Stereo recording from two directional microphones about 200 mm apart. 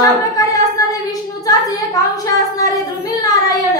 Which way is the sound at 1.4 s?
20° left (ahead or behind).